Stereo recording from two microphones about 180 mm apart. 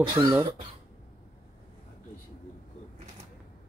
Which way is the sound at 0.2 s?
20° right (ahead or behind).